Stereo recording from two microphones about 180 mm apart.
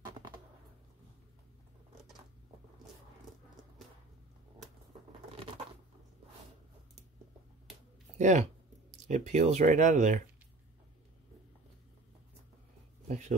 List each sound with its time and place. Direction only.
8.2 s speech: 40° right (ahead or behind)